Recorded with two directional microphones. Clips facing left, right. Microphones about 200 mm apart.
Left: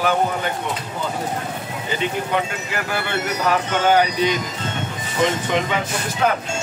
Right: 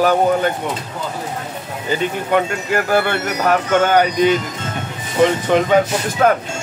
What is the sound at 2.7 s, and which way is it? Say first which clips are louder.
Speech: right 11 dB; 50° right (ahead or behind).